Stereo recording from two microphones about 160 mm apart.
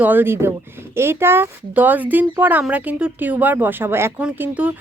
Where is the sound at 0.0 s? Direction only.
10° right (ahead or behind).